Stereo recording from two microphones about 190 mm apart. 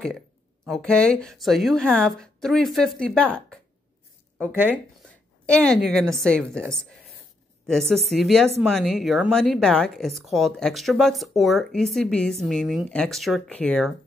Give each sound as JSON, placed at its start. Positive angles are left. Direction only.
{"t": 0.7, "sound": "speech", "side_deg": 5}
{"t": 4.5, "sound": "speech", "side_deg": -10}
{"t": 5.5, "sound": "speech", "side_deg": 5}
{"t": 7.9, "sound": "speech", "side_deg": 0}